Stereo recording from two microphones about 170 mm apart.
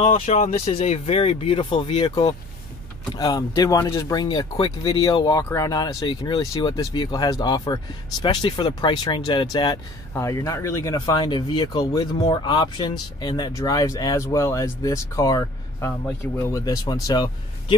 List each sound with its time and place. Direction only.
0.0 s speech: 40° left (ahead or behind)